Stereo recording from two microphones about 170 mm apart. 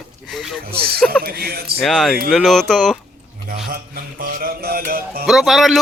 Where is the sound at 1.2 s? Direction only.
65° right (ahead or behind).